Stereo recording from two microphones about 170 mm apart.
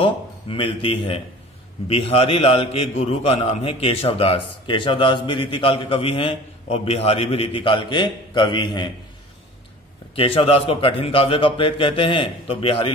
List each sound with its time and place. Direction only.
0.0 s a man's voice: 30° left (ahead or behind)
10.1 s a man's voice: 35° left (ahead or behind)